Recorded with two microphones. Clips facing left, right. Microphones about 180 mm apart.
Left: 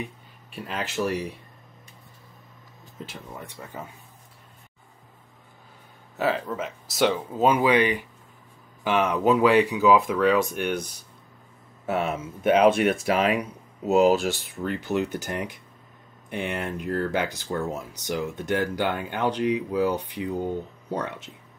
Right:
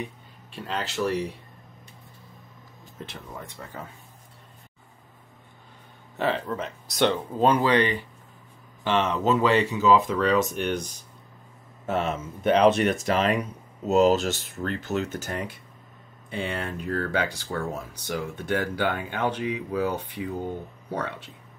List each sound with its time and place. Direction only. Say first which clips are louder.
3.3 s speech: even; 15° left (ahead or behind)
6.1 s speech: left 1 dB; 5° left (ahead or behind)